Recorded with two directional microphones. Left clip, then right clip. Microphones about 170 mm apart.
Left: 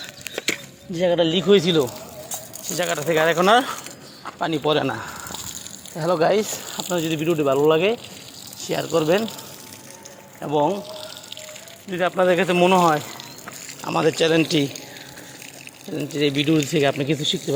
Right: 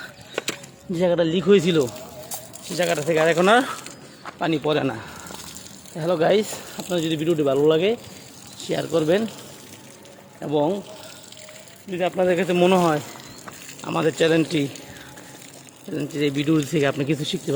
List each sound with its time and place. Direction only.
0.9 s speech: 30° right (ahead or behind)
2.6 s speech: 20° right (ahead or behind)
10.4 s speech: 30° right (ahead or behind)
11.9 s speech: 15° right (ahead or behind)
12.6 s speech: 30° right (ahead or behind)
13.8 s speech: 10° right (ahead or behind)
16.0 s speech: 15° right (ahead or behind)